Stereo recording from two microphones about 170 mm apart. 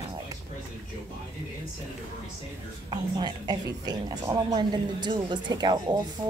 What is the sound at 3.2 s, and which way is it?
A woman's voice, 25° right (ahead or behind).